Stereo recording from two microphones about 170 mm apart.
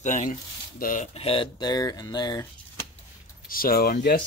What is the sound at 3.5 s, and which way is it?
Speech, 60° left (ahead or behind).